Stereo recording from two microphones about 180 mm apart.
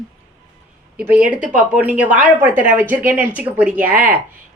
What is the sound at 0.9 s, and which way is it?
Speech, 5° right (ahead or behind).